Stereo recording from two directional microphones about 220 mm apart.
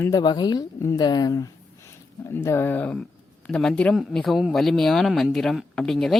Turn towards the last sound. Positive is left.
turn(degrees=0)  # may be behind; listen again after turning